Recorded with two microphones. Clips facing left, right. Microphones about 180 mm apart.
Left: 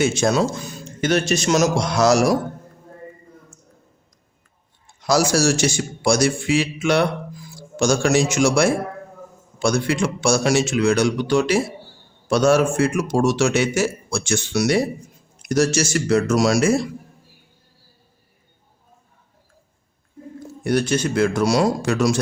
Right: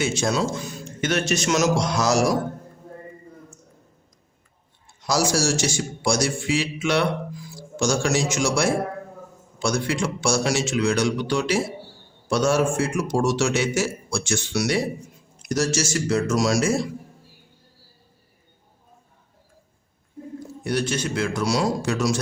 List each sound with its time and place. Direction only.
0.0 s a man's voice: 50° left (ahead or behind)
1.0 s a man's voice: 35° left (ahead or behind)
1.8 s a man's voice: 65° left (ahead or behind)
5.0 s a man's voice: 60° left (ahead or behind); by 7.1 s 45° left (ahead or behind)
7.8 s a man's voice: 60° left (ahead or behind)
12.3 s a man's voice: 65° left (ahead or behind); by 14.8 s 45° left (ahead or behind)
15.4 s a man's voice: 60° left (ahead or behind)
20.7 s a man's voice: 50° left (ahead or behind)